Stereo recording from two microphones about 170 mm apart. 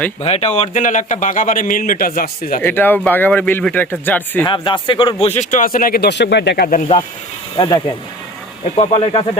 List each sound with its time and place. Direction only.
0.2 s speech: 35° left (ahead or behind)
0.7 s a man's voice: 50° left (ahead or behind)
2.6 s speech: 10° left (ahead or behind)
4.4 s speech: 30° left (ahead or behind)
5.2 s speech: 45° left (ahead or behind); by 6.7 s 90° left
7.5 s speech: 30° left (ahead or behind)